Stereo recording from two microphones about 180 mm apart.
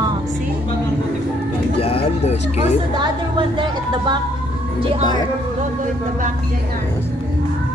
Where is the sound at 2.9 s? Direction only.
25° right (ahead or behind).